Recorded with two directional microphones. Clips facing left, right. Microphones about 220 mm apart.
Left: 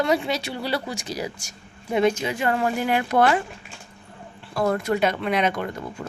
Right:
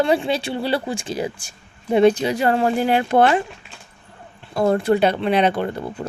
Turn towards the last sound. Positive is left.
turn(degrees=-30)  # may be behind; listen again after turning